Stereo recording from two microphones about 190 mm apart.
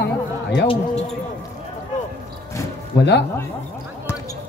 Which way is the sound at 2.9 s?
60° left (ahead or behind).